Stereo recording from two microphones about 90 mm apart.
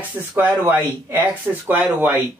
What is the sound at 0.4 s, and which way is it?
Speech, 20° right (ahead or behind).